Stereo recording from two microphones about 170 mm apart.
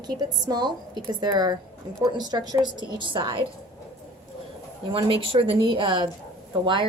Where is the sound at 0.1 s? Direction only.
25° right (ahead or behind).